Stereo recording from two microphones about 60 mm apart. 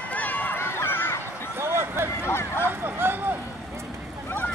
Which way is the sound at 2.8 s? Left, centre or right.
Right.